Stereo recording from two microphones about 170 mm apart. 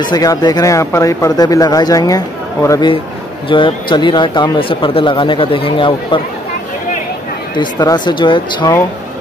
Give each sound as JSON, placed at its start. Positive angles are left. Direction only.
{"t": 0.1, "sound": "speech", "side_deg": 20}
{"t": 7.5, "sound": "speech", "side_deg": 25}